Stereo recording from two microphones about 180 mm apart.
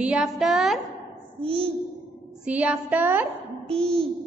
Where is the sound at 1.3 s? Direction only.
30° right (ahead or behind).